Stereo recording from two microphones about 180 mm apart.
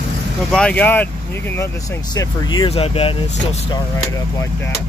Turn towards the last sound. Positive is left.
turn(degrees=30)  # may be behind; listen again after turning